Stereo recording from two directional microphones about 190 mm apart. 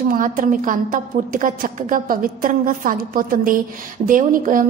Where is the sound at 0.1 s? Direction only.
45° right (ahead or behind).